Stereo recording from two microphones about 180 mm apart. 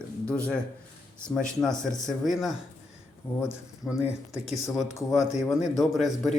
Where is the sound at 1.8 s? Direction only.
Centre (ahead or behind).